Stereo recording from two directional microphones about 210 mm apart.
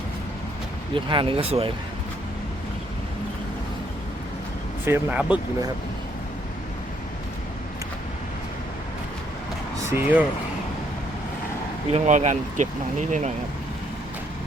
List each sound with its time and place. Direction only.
0.9 s speech: 25° right (ahead or behind)
4.9 s speech: 5° right (ahead or behind)
9.9 s speech: 10° right (ahead or behind)
11.9 s speech: 35° right (ahead or behind)